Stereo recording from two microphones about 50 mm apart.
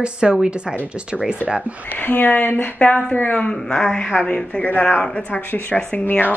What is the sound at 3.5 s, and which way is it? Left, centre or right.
Speech, centre.